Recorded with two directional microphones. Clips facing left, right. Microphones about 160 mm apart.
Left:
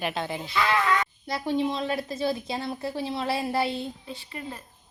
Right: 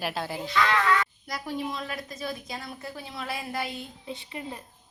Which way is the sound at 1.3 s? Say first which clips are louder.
Left 10 dB; 25° left (ahead or behind).